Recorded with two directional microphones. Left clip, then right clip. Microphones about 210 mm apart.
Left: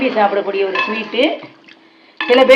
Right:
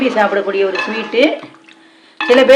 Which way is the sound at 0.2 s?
55° right (ahead or behind).